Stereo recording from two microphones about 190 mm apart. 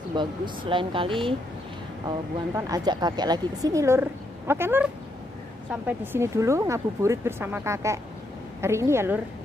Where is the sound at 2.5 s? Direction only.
20° right (ahead or behind).